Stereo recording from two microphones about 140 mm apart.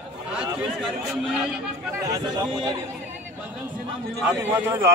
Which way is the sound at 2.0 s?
30° right (ahead or behind).